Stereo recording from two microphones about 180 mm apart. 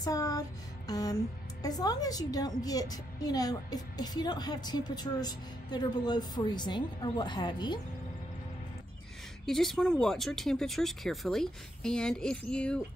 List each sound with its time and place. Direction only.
0.0 s music: 20° left (ahead or behind)
1.6 s a woman's voice: 20° left (ahead or behind)
9.5 s speech: centre (ahead or behind)